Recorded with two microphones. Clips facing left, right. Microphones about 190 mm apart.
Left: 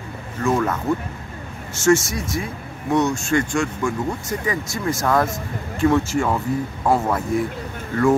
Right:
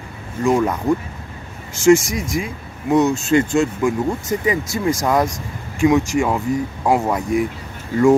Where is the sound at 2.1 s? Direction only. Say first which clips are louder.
Right 3 dB; 15° right (ahead or behind).